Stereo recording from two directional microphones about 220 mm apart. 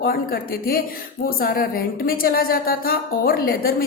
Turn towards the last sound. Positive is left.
turn(degrees=40)  # may be behind; listen again after turning